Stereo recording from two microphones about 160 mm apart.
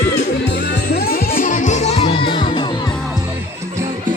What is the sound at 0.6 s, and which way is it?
Music, 75° left (ahead or behind).